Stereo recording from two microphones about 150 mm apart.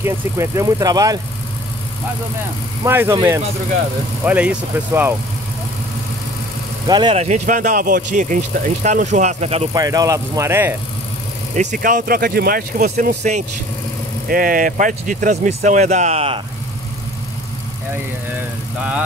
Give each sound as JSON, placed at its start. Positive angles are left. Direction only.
{"t": 0.0, "sound": "speech", "side_deg": -20}
{"t": 2.8, "sound": "speech", "side_deg": -15}
{"t": 6.9, "sound": "speech", "side_deg": -30}
{"t": 7.2, "sound": "speech", "side_deg": -50}
{"t": 9.8, "sound": "speech", "side_deg": -20}
{"t": 11.5, "sound": "speech", "side_deg": -55}
{"t": 13.2, "sound": "speech", "side_deg": -60}